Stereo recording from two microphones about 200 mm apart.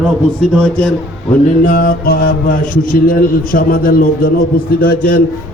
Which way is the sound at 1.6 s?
45° left (ahead or behind).